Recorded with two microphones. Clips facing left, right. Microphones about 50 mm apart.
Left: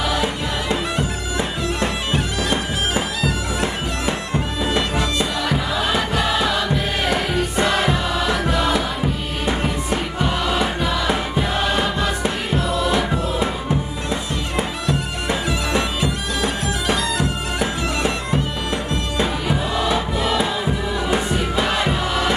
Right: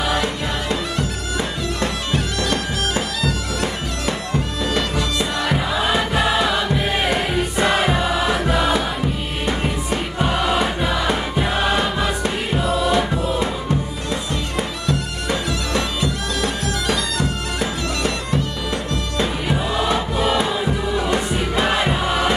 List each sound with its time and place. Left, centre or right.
0.2 s music: centre
1.8 s bagpipes: centre
5.5 s music: centre
14.9 s bagpipes: centre
19.4 s music: centre